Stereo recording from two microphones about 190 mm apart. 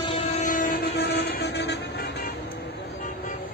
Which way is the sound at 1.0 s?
60° left (ahead or behind).